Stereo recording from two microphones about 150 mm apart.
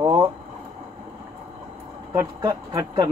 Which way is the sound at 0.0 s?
20° right (ahead or behind).